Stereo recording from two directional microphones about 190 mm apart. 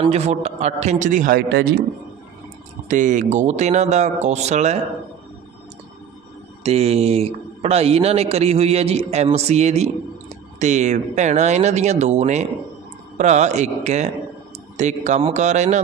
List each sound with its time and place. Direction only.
0.0 s speech: 35° right (ahead or behind); by 1.6 s 55° right (ahead or behind)
2.9 s speech: 40° right (ahead or behind)
6.6 s speech: 35° right (ahead or behind)